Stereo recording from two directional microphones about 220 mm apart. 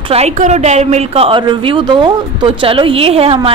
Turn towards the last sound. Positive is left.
turn(degrees=-25)  # may be behind; listen again after turning